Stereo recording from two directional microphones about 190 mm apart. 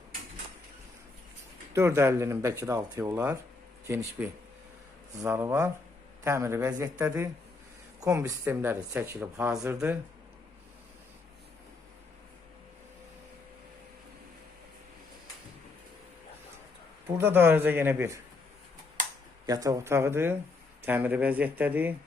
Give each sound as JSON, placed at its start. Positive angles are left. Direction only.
{"t": 1.7, "sound": "speech", "side_deg": -15}
{"t": 17.2, "sound": "speech", "side_deg": -10}
{"t": 19.5, "sound": "speech", "side_deg": -20}